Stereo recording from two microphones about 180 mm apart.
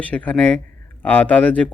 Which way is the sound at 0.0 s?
10° left (ahead or behind).